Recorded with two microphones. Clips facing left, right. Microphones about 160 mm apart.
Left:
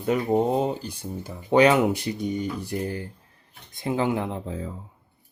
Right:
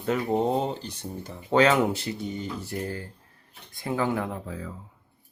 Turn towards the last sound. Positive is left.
turn(degrees=25)  # may be behind; listen again after turning